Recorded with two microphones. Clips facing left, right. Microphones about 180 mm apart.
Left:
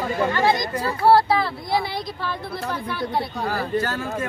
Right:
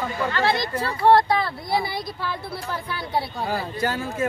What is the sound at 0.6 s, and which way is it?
Speech, 10° left (ahead or behind).